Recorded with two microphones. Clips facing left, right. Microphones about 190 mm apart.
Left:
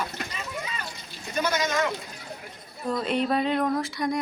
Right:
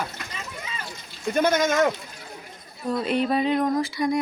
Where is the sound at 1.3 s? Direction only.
50° right (ahead or behind).